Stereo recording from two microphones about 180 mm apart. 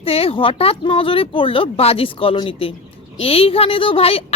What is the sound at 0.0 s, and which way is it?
Speech, 30° left (ahead or behind).